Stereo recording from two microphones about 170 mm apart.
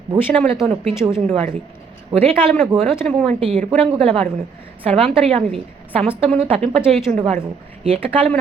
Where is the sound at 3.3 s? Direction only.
35° right (ahead or behind).